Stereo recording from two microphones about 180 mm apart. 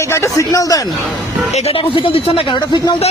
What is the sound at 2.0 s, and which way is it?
Speech, 30° left (ahead or behind).